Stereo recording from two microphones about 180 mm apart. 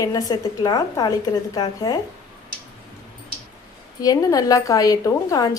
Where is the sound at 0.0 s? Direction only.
20° left (ahead or behind).